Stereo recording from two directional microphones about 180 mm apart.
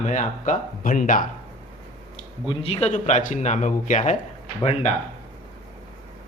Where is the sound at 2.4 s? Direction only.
30° left (ahead or behind).